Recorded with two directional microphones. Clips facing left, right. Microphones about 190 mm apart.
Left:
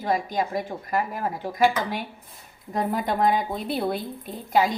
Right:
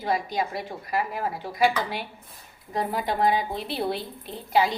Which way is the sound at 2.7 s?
50° left (ahead or behind).